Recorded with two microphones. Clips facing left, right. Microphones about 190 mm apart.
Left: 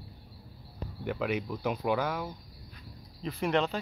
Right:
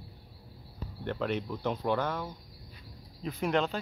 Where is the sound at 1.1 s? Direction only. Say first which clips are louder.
Left 1 dB; 10° left (ahead or behind).